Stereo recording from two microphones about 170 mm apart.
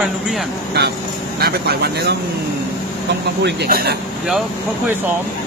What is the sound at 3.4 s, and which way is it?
Speech, 70° right (ahead or behind).